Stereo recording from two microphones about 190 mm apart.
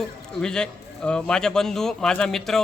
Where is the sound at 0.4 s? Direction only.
5° left (ahead or behind).